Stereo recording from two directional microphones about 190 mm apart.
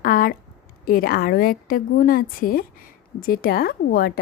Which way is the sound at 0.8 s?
50° left (ahead or behind).